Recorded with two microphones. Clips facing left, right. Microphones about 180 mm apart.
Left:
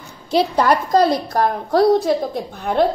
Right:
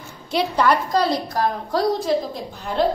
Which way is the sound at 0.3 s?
40° left (ahead or behind).